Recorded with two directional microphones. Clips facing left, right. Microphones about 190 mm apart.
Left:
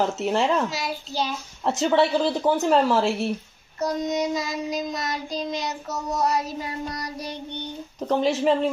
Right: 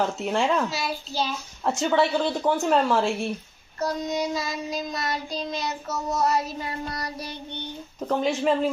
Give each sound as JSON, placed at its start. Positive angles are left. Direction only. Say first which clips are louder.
{"t": 0.0, "sound": "speech", "louder": "left 2 dB", "side_deg": 0}
{"t": 0.7, "sound": "child singing", "louder": "even", "side_deg": 15}
{"t": 1.6, "sound": "speech", "louder": "left 2 dB", "side_deg": 0}
{"t": 3.8, "sound": "child singing", "louder": "left 2 dB", "side_deg": 20}
{"t": 8.1, "sound": "speech", "louder": "left 2 dB", "side_deg": 0}